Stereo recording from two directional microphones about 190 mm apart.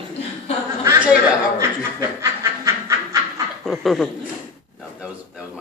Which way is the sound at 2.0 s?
15° right (ahead or behind).